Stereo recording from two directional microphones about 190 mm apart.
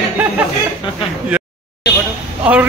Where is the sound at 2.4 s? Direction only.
5° right (ahead or behind).